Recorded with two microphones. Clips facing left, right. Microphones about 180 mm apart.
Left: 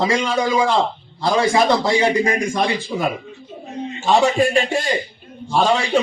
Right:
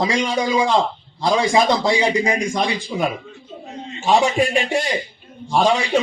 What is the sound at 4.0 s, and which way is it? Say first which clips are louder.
Speech: left 1 dB; 15° right (ahead or behind).